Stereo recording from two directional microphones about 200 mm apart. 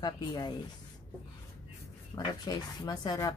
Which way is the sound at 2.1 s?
20° left (ahead or behind).